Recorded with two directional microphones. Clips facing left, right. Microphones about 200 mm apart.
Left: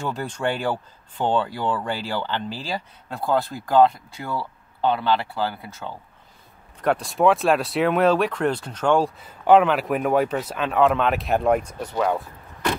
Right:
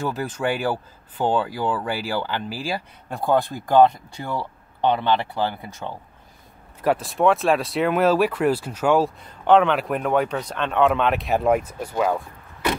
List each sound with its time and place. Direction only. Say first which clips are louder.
0.0 s speech: right 1 dB; 5° right (ahead or behind)
5.0 s speech: right 1 dB; 20° right (ahead or behind)
6.8 s speech: even; 5° right (ahead or behind)